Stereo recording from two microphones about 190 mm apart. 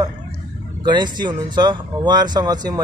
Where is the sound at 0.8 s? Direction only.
25° right (ahead or behind).